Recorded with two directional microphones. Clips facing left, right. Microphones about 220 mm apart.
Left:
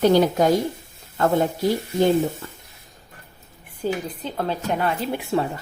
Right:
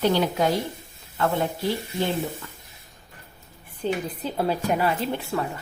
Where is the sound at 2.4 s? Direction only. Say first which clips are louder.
Left 4 dB; 35° left (ahead or behind).